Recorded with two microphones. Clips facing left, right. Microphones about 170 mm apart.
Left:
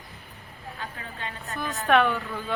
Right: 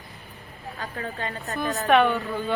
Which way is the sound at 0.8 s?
40° right (ahead or behind).